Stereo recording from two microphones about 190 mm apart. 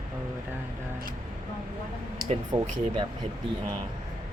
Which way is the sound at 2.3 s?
25° right (ahead or behind).